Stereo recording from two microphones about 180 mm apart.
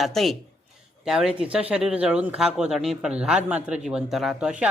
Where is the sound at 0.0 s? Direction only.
Centre (ahead or behind).